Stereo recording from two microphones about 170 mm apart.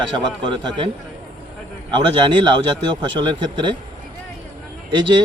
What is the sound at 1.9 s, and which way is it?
Speech, 25° right (ahead or behind).